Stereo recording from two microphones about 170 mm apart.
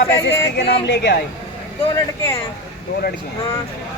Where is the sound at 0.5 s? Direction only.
85° left.